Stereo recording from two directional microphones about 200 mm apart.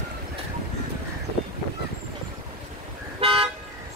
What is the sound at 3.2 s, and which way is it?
Toot, 30° right (ahead or behind).